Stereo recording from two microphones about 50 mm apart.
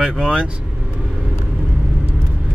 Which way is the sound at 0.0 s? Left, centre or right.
Centre.